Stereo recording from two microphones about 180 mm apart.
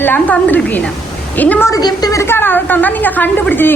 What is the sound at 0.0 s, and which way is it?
A woman's voice, 10° left (ahead or behind).